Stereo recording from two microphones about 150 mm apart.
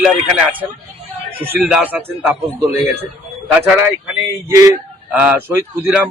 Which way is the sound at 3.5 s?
15° right (ahead or behind).